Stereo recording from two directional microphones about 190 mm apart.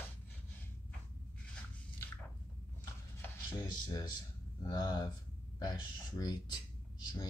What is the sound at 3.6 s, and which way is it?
Speech, 20° left (ahead or behind).